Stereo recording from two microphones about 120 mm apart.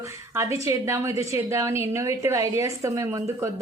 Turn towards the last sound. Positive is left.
turn(degrees=-25)  # may be behind; listen again after turning